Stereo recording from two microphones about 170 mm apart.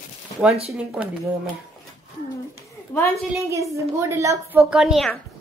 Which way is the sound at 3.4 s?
20° right (ahead or behind).